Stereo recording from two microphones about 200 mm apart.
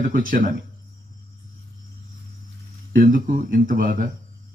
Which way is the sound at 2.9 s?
45° right (ahead or behind).